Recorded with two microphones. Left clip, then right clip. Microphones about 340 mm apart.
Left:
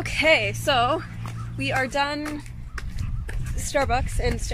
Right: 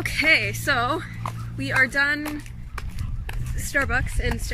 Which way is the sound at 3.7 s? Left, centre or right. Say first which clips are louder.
Even; centre.